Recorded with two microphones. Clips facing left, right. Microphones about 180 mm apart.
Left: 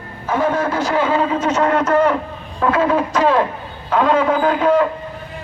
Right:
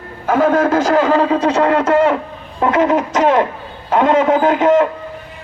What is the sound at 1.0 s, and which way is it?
A man's voice, 35° right (ahead or behind).